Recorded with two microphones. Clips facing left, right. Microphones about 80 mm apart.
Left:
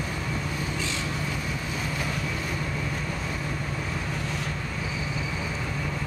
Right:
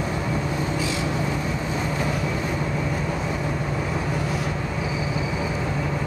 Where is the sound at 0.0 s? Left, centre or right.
Right.